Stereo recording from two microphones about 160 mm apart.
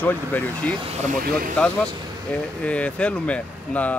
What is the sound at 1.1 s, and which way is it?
Speech, 65° right (ahead or behind).